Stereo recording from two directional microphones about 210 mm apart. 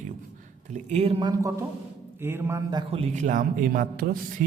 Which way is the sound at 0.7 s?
30° right (ahead or behind).